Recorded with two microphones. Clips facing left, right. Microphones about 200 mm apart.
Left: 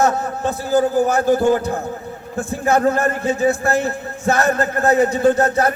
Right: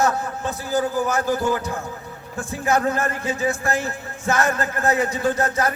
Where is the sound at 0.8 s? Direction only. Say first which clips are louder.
Left 6 dB; 35° left (ahead or behind).